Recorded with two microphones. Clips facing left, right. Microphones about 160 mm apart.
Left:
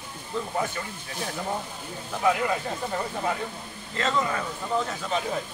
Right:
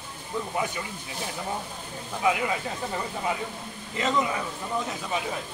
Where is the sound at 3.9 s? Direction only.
15° right (ahead or behind).